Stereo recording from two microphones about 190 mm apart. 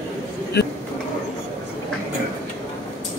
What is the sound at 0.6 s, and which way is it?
Speech, 60° left (ahead or behind).